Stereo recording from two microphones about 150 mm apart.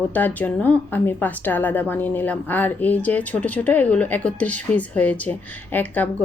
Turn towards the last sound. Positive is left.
turn(degrees=10)  # may be behind; listen again after turning